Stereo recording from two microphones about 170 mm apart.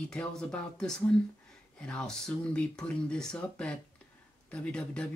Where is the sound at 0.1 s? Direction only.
5° left (ahead or behind).